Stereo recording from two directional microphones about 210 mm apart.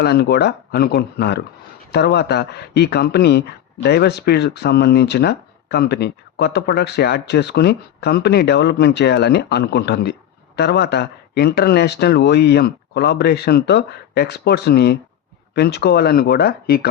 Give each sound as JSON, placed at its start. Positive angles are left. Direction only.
{"t": 0.0, "sound": "speech", "side_deg": 50}